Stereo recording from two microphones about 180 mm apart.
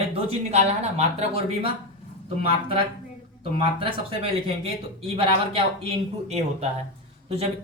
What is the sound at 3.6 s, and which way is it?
Speech, 30° right (ahead or behind).